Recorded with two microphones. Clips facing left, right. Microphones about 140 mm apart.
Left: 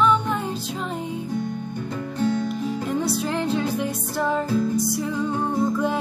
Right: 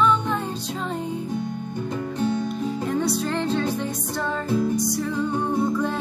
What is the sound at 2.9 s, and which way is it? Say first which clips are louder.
Music: right 1 dB; 5° left (ahead or behind).